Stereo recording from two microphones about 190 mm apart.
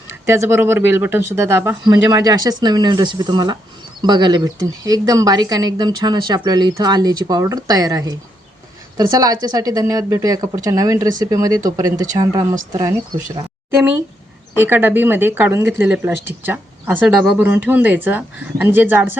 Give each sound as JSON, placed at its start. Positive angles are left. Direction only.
{"t": 0.3, "sound": "a woman's voice", "side_deg": -15}
{"t": 14.5, "sound": "speech", "side_deg": -10}